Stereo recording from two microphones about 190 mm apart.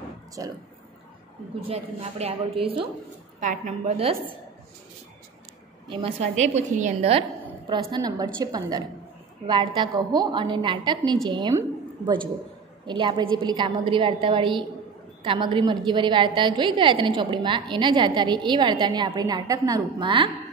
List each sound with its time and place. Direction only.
0.4 s a woman's voice: 20° right (ahead or behind)
1.7 s a woman's voice: 30° right (ahead or behind)
3.3 s a woman's voice: 40° right (ahead or behind)
5.9 s a woman's voice: 30° right (ahead or behind)
12.8 s a woman's voice: 25° right (ahead or behind)